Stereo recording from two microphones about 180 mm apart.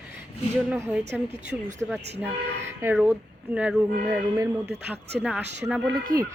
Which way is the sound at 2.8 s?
5° right (ahead or behind).